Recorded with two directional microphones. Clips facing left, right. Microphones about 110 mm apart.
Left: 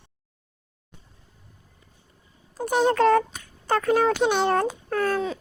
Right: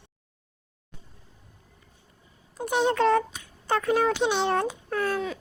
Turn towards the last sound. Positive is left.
turn(degrees=45)  # may be behind; listen again after turning